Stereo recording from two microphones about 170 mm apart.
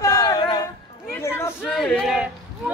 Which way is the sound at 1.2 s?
15° left (ahead or behind).